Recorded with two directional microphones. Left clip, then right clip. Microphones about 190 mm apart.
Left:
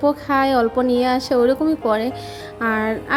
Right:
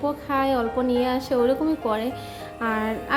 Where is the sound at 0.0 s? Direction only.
35° left (ahead or behind).